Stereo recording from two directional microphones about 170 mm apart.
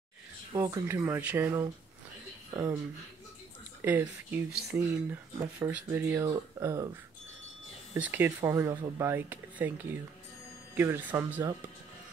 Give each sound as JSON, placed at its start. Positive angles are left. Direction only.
{"t": 0.6, "sound": "speech", "side_deg": -15}
{"t": 3.8, "sound": "speech", "side_deg": -10}